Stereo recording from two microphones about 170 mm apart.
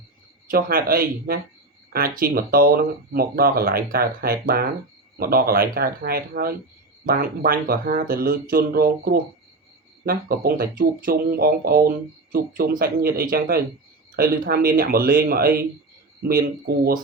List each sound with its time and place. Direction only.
0.4 s speech: 55° right (ahead or behind)